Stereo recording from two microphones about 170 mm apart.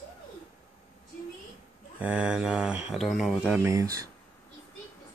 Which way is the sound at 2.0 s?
5° right (ahead or behind).